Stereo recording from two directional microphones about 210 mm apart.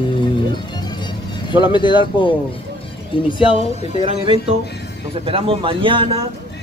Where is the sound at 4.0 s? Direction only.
25° right (ahead or behind).